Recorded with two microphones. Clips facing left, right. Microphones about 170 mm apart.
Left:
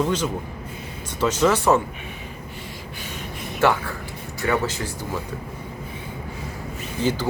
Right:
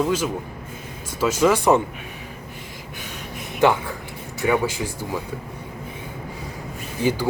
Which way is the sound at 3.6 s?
15° right (ahead or behind).